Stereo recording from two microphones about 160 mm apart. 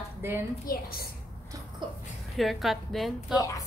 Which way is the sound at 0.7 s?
70° left (ahead or behind).